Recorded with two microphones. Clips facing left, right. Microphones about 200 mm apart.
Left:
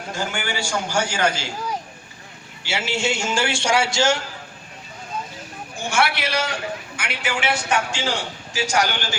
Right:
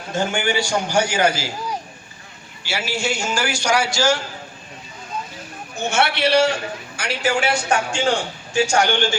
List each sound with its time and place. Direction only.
0.1 s a man's voice: 20° right (ahead or behind)
2.6 s a man's voice: 25° left (ahead or behind)
5.8 s a man's voice: 25° right (ahead or behind)
6.9 s a man's voice: 40° right (ahead or behind)
7.7 s a man's voice: 30° right (ahead or behind)